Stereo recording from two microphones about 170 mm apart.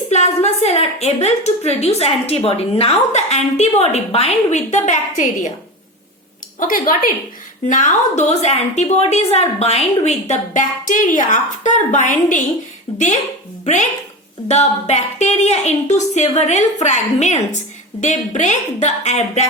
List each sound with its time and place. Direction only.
0.1 s a woman's voice: 40° left (ahead or behind)
6.6 s a woman's voice: 55° left (ahead or behind)
14.4 s a woman's voice: 40° left (ahead or behind)